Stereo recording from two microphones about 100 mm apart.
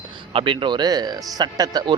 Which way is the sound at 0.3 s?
55° right (ahead or behind).